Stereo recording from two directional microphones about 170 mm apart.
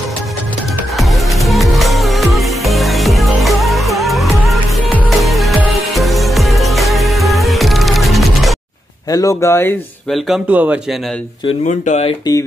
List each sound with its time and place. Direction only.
0.9 s music: centre (ahead or behind)
9.1 s speech: 20° left (ahead or behind)
10.1 s speech: centre (ahead or behind)
11.6 s speech: 45° left (ahead or behind)